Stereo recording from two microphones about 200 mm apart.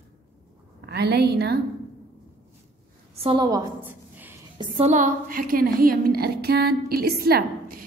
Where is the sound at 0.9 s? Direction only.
55° right (ahead or behind).